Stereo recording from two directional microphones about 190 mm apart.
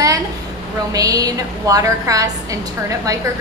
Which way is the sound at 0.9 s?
20° right (ahead or behind).